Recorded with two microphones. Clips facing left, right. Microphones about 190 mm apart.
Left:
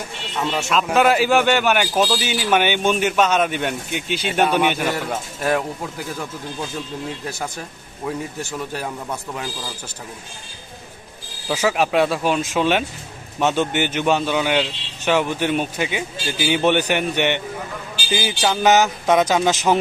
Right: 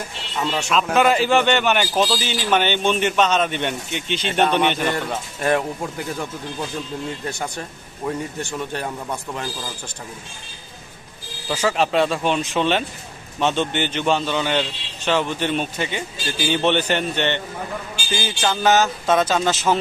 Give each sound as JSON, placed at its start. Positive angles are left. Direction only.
{"t": 0.3, "sound": "a man's voice", "side_deg": 0}
{"t": 11.4, "sound": "a man's voice", "side_deg": 10}